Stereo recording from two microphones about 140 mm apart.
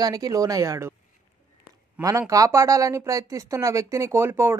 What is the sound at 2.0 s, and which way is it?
Speech, 10° right (ahead or behind).